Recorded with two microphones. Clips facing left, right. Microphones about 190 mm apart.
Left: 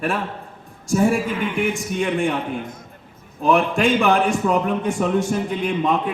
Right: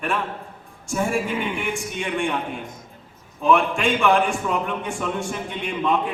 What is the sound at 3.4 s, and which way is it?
A man's voice, 40° left (ahead or behind).